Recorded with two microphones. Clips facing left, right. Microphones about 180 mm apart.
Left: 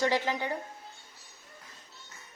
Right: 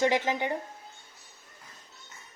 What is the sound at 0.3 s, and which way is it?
Speech, 20° right (ahead or behind).